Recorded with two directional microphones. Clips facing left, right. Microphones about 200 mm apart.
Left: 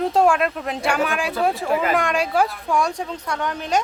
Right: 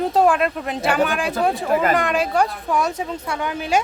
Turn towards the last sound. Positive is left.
turn(degrees=-5)  # may be behind; listen again after turning